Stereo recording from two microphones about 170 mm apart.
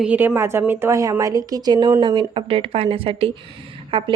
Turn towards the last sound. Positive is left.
turn(degrees=-30)  # may be behind; listen again after turning